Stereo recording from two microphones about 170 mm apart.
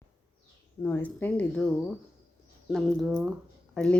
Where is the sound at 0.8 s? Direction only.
15° left (ahead or behind).